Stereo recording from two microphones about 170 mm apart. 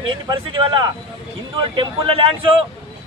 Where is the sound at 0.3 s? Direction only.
30° right (ahead or behind).